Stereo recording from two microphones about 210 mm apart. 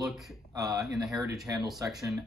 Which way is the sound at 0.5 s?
15° right (ahead or behind).